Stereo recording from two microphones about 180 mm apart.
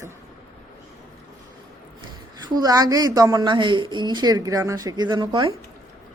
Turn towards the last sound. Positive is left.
turn(degrees=-25)  # may be behind; listen again after turning